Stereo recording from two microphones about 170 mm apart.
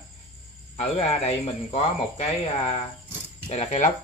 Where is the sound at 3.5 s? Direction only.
45° left (ahead or behind).